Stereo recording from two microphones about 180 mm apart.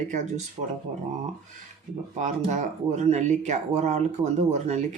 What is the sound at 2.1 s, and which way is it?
Speech, 40° right (ahead or behind).